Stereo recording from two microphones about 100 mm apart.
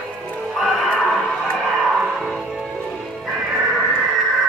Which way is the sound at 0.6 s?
Centre (ahead or behind).